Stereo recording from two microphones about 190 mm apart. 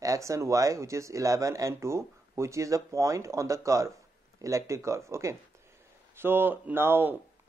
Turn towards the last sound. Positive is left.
turn(degrees=-10)  # may be behind; listen again after turning